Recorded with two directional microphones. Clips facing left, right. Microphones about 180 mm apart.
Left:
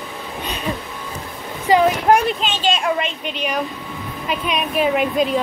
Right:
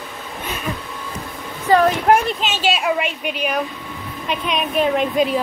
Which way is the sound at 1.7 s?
15° left (ahead or behind).